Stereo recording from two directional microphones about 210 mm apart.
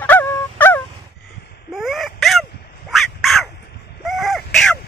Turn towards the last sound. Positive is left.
turn(degrees=0)  # may be behind; listen again after turning